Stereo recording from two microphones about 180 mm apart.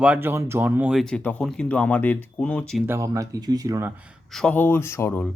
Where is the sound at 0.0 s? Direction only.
10° right (ahead or behind).